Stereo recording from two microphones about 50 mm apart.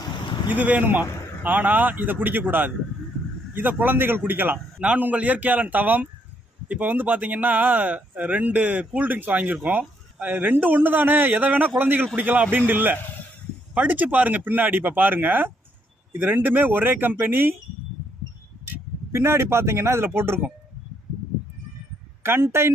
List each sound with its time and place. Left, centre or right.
0.5 s speech: right
4.5 s a man's voice: right
19.1 s speech: right
22.2 s speech: right